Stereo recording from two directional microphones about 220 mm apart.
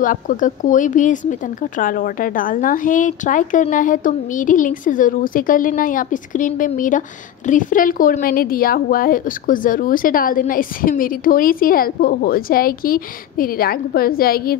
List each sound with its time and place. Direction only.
0.0 s speech: 40° left (ahead or behind)